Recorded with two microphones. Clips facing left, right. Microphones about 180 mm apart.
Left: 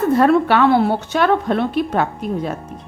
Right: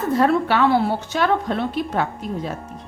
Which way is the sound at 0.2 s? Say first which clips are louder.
Left 2 dB; 60° left (ahead or behind).